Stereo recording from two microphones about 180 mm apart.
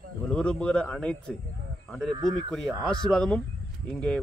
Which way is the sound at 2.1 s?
25° right (ahead or behind).